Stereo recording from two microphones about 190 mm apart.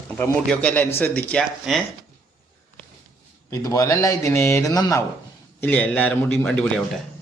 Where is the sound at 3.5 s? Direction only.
15° left (ahead or behind).